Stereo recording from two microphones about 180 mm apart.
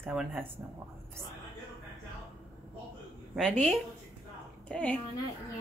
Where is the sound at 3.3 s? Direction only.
5° left (ahead or behind).